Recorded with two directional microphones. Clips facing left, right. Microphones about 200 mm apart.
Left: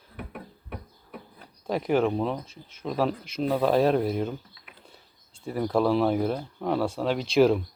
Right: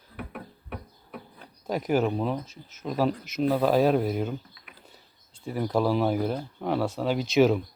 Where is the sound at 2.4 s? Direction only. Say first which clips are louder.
Right 1 dB; 30° left (ahead or behind).